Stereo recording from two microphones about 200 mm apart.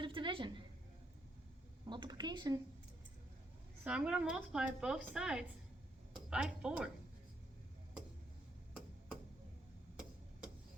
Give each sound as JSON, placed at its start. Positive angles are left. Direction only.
{"t": 0.0, "sound": "a sound", "side_deg": -25}
{"t": 1.9, "sound": "speech", "side_deg": -20}
{"t": 3.8, "sound": "a woman's voice", "side_deg": -5}